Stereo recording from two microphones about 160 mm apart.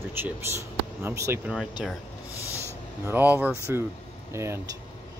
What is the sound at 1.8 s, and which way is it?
Speech, 5° right (ahead or behind).